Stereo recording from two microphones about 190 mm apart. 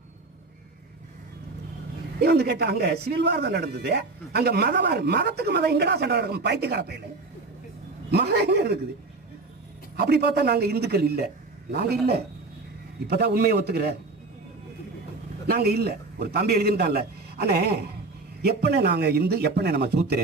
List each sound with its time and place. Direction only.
2.1 s a man's voice: 60° right (ahead or behind)
8.1 s a man's voice: 60° right (ahead or behind)
9.9 s a man's voice: 60° right (ahead or behind)
13.0 s a man's voice: 60° right (ahead or behind)
15.4 s a man's voice: 55° right (ahead or behind)